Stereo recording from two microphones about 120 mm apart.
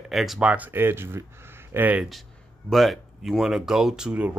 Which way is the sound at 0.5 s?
15° right (ahead or behind).